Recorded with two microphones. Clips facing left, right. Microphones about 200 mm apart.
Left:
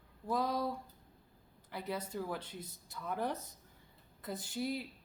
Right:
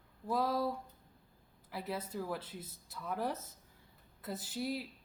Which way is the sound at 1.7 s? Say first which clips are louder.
Even; 5° right (ahead or behind).